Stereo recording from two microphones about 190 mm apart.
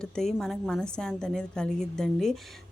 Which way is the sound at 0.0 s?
Centre (ahead or behind).